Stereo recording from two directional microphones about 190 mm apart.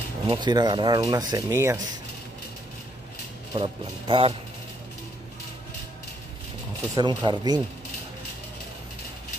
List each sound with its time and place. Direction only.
0.3 s speech: 25° right (ahead or behind)
3.5 s speech: 30° right (ahead or behind)
7.0 s speech: 20° right (ahead or behind)